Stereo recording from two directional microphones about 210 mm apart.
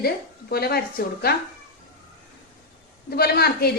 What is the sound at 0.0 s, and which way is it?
A woman's voice, 45° left (ahead or behind).